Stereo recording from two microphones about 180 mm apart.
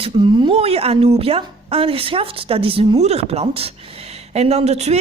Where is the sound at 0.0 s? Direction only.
25° right (ahead or behind).